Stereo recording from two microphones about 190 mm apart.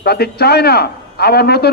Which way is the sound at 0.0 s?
55° left (ahead or behind).